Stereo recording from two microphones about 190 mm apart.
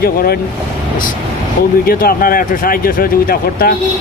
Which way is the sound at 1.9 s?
50° left (ahead or behind).